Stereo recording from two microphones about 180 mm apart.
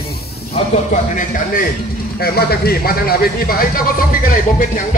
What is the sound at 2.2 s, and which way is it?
Speech, 55° left (ahead or behind).